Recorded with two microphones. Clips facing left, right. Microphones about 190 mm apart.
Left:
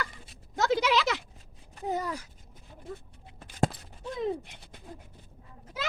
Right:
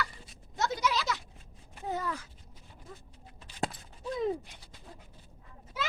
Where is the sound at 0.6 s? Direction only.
85° left.